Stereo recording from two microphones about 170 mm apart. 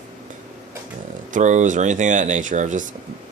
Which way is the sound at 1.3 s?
45° right (ahead or behind).